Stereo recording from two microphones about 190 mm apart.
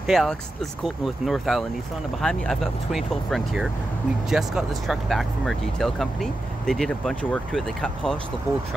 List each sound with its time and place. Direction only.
0.0 s speech: centre (ahead or behind)